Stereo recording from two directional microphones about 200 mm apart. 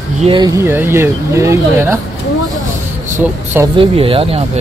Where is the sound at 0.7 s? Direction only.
10° right (ahead or behind).